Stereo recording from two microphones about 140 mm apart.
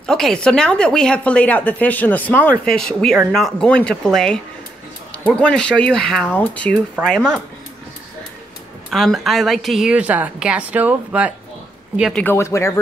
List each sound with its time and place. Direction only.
0.0 s speech: 5° left (ahead or behind)
8.9 s a woman's voice: centre (ahead or behind)
12.1 s speech: 10° left (ahead or behind)
12.4 s speech: 20° left (ahead or behind)